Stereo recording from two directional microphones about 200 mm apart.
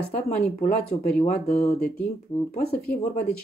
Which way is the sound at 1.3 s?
35° left (ahead or behind).